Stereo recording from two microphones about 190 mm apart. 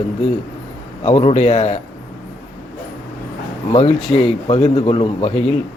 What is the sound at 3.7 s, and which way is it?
Speech, 30° left (ahead or behind).